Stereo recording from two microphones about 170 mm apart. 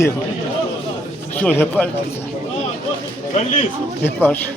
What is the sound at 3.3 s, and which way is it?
Speech, 40° left (ahead or behind).